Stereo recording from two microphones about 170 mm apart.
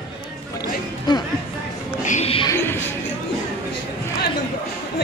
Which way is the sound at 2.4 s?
15° left (ahead or behind).